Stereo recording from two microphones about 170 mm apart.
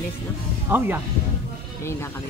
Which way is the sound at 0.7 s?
10° right (ahead or behind).